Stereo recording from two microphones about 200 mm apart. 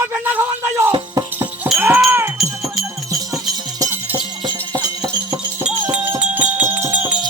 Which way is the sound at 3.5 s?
20° right (ahead or behind).